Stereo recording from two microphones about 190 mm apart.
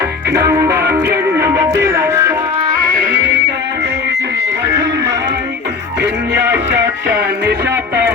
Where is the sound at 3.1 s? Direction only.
65° right (ahead or behind).